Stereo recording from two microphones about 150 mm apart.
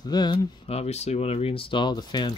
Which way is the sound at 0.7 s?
45° left (ahead or behind).